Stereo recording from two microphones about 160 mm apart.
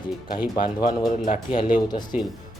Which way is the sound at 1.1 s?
50° left (ahead or behind).